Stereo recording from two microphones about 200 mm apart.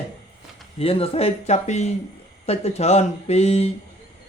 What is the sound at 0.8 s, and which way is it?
Speech, 30° left (ahead or behind).